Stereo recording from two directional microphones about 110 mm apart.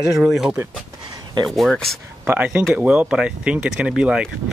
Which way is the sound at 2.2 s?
10° right (ahead or behind).